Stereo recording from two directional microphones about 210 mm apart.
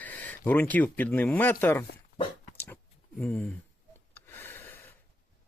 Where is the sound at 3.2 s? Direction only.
5° left (ahead or behind).